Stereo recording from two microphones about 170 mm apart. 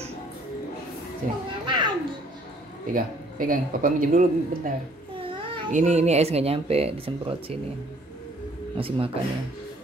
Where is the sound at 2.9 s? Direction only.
55° right (ahead or behind); by 7.5 s 35° right (ahead or behind).